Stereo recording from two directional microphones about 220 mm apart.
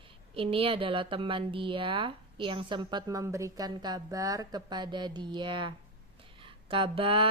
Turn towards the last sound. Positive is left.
turn(degrees=-25)  # may be behind; listen again after turning